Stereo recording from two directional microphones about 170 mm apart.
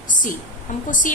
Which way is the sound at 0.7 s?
50° left (ahead or behind).